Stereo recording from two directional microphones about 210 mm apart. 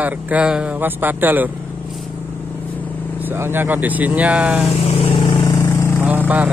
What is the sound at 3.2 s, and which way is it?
Speech, 10° right (ahead or behind).